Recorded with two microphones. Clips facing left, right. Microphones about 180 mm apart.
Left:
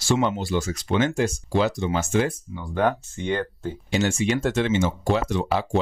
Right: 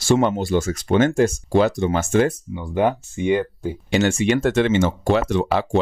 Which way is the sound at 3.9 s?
65° right (ahead or behind).